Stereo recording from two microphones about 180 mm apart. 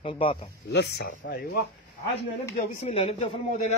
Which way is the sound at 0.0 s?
30° left (ahead or behind).